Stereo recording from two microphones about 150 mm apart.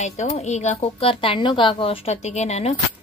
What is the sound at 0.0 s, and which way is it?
A woman's voice, 50° left (ahead or behind).